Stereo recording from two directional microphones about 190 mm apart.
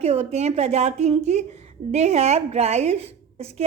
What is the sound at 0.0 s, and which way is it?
A woman's voice, 35° right (ahead or behind).